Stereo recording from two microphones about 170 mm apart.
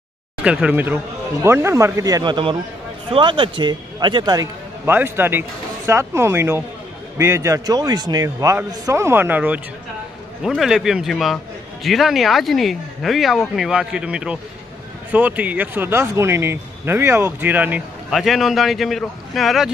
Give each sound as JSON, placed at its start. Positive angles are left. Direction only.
{"t": 0.4, "sound": "a man's voice", "side_deg": -5}